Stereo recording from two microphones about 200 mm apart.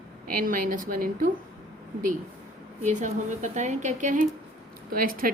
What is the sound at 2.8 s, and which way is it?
A woman's voice, 35° right (ahead or behind).